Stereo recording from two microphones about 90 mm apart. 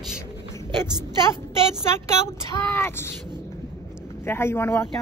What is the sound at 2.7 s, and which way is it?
Speech, 25° left (ahead or behind).